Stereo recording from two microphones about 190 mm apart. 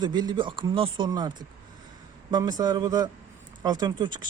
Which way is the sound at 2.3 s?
20° right (ahead or behind).